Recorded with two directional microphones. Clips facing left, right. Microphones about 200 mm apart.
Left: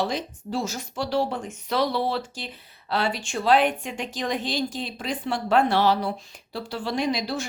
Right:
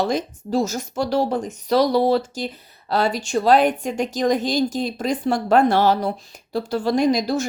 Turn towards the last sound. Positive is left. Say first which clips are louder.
# right 7 dB
turn(degrees=-45)  # may be behind; listen again after turning